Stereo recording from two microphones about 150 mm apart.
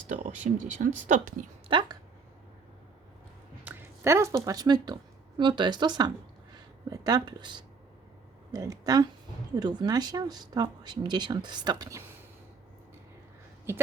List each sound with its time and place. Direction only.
0.1 s speech: 55° right (ahead or behind)
1.6 s speech: 35° right (ahead or behind)
3.6 s squish: 10° right (ahead or behind)
4.4 s speech: 25° right (ahead or behind)